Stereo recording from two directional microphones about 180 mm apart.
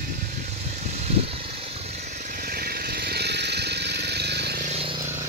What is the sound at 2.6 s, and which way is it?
Vehicle, 60° right (ahead or behind).